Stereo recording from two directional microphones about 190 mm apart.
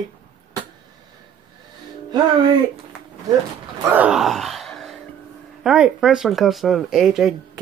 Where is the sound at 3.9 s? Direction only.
5° right (ahead or behind).